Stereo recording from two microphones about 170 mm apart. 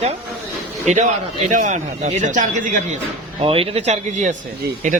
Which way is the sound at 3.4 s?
35° right (ahead or behind).